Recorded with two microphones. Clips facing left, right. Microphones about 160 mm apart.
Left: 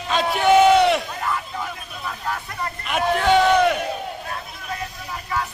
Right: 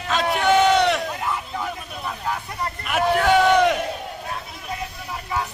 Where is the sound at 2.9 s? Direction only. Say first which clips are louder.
Right 1 dB; 5° right (ahead or behind).